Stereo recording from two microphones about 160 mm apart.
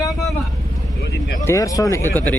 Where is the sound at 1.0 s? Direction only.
90° left.